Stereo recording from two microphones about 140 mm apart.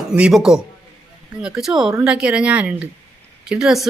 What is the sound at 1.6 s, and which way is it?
Speech, 5° right (ahead or behind).